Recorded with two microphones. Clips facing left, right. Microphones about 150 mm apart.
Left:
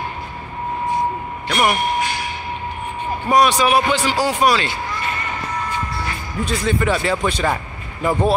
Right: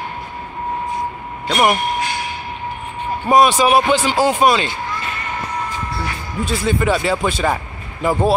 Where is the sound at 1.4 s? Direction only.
25° right (ahead or behind).